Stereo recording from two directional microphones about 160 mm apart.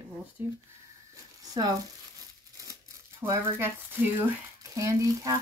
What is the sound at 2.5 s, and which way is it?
Crumpling, 20° right (ahead or behind).